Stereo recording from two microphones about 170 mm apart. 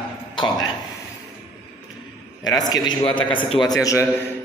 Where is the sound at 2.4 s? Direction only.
25° left (ahead or behind).